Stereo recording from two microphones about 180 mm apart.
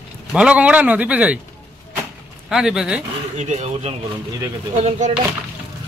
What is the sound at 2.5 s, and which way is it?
Speech, 5° right (ahead or behind).